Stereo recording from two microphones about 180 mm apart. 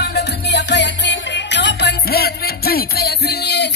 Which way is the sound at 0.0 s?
65° left (ahead or behind).